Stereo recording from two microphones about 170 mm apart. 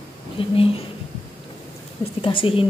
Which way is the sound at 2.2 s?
30° left (ahead or behind).